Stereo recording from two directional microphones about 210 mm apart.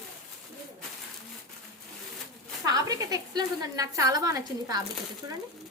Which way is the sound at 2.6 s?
15° right (ahead or behind).